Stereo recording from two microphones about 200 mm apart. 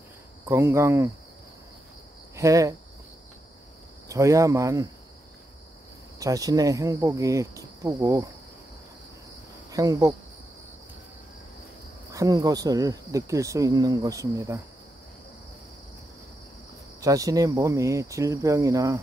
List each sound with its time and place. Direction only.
0.5 s speech: 15° right (ahead or behind)
2.3 s speech: 15° right (ahead or behind)
4.1 s speech: 15° right (ahead or behind)
6.1 s speech: 15° right (ahead or behind)
9.7 s speech: 15° right (ahead or behind)
12.1 s speech: 15° right (ahead or behind)
17.0 s speech: 15° right (ahead or behind)